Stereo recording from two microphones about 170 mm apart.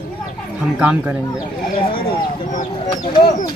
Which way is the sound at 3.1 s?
30° left (ahead or behind).